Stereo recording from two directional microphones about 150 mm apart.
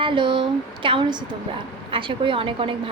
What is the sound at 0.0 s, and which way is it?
A woman's voice, 35° right (ahead or behind).